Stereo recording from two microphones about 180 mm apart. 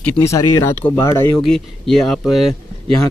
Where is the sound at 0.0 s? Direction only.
10° left (ahead or behind).